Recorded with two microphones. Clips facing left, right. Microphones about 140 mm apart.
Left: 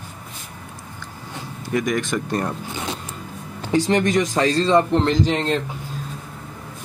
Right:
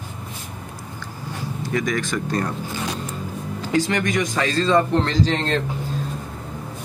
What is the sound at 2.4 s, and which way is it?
Zipper, 20° left (ahead or behind).